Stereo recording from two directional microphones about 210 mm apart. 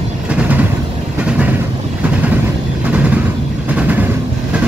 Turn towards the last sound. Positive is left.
turn(degrees=-5)  # may be behind; listen again after turning